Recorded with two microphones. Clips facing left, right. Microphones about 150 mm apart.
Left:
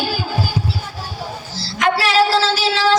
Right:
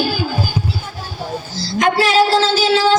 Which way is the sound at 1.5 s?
30° left (ahead or behind).